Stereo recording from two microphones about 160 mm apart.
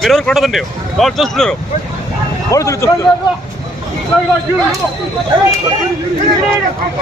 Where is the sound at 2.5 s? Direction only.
20° left (ahead or behind).